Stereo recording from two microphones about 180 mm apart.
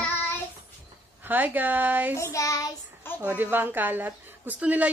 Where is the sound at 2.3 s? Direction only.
20° left (ahead or behind).